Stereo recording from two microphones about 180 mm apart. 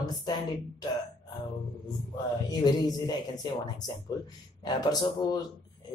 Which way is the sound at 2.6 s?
20° left (ahead or behind).